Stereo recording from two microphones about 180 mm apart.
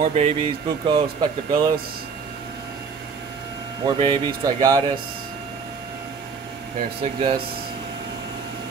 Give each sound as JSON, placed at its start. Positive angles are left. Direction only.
{"t": 0.0, "sound": "speech", "side_deg": -30}
{"t": 3.8, "sound": "speech", "side_deg": -25}
{"t": 7.0, "sound": "speech", "side_deg": -30}